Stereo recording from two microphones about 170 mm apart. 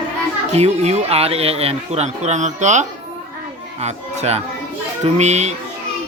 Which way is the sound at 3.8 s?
40° right (ahead or behind).